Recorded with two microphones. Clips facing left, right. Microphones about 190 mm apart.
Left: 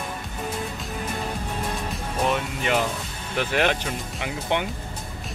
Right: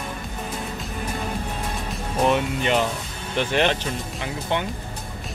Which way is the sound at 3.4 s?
5° left (ahead or behind).